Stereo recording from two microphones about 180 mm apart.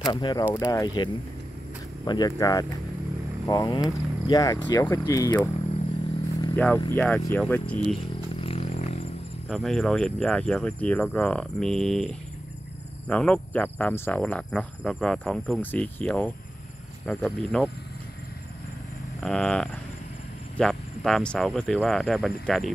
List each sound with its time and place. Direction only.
0.1 s speech: 25° left (ahead or behind)
6.5 s insect: 10° left (ahead or behind)
8.4 s a sound: 35° left (ahead or behind)
9.5 s speech: centre (ahead or behind)
13.1 s insect: 5° left (ahead or behind)
17.0 s speech: 5° left (ahead or behind)
19.2 s speech: 5° left (ahead or behind)